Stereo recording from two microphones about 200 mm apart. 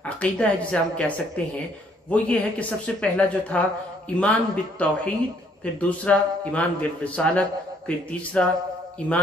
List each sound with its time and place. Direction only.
0.0 s a man's voice: 5° left (ahead or behind)